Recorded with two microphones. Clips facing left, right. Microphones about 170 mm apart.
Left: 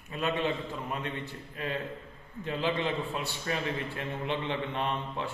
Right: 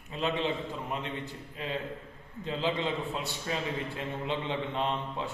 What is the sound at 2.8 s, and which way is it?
A man's voice, 15° right (ahead or behind).